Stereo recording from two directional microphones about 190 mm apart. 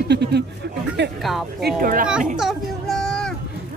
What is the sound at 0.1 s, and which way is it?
Speech, 60° right (ahead or behind).